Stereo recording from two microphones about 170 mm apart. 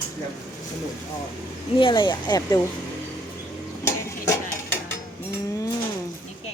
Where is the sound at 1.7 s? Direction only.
30° left (ahead or behind).